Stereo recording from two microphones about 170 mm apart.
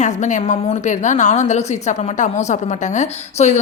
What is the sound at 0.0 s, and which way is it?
A woman's voice, 45° left (ahead or behind).